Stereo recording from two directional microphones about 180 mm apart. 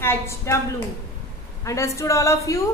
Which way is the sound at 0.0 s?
10° left (ahead or behind).